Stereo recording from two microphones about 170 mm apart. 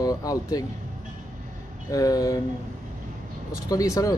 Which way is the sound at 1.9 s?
20° left (ahead or behind).